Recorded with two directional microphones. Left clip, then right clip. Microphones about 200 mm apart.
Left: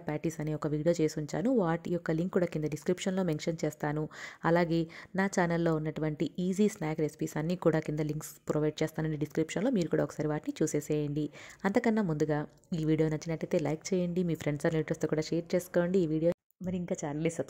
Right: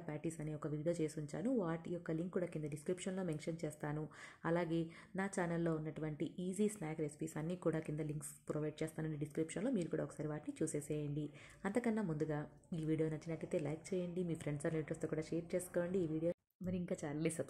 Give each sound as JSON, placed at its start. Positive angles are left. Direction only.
{"t": 0.0, "sound": "speech", "side_deg": 45}
{"t": 16.6, "sound": "speech", "side_deg": 30}